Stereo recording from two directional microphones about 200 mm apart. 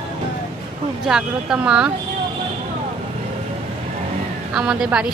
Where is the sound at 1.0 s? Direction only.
5° right (ahead or behind).